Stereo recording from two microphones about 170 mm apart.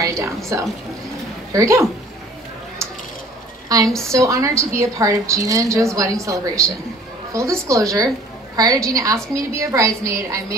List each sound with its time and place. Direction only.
0.0 s a woman's voice: 20° right (ahead or behind)
3.6 s a woman's voice: 20° right (ahead or behind)